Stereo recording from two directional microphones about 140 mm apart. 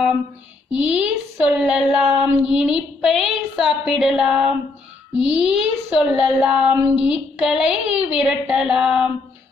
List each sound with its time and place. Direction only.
0.7 s speech: 10° right (ahead or behind)